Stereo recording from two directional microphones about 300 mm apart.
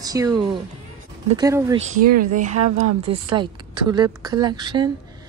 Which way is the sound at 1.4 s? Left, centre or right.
Centre.